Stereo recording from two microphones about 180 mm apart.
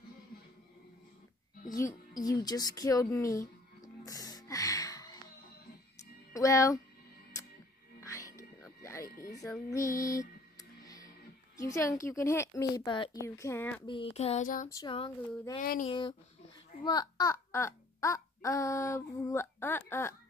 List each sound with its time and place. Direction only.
1.7 s a sound: 20° left (ahead or behind)
6.3 s speech: 20° left (ahead or behind)
8.0 s music: 20° left (ahead or behind)
11.6 s speech: 15° left (ahead or behind)
13.8 s a sound: 30° left (ahead or behind); by 14.7 s 45° left (ahead or behind)
14.8 s child singing: 25° left (ahead or behind)
15.6 s a sound: 55° left (ahead or behind)
15.9 s child singing: 25° left (ahead or behind)
16.8 s a child's voice: 20° left (ahead or behind)